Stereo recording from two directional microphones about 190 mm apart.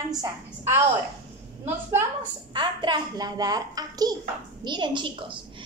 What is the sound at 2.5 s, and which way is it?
Speech, 25° right (ahead or behind).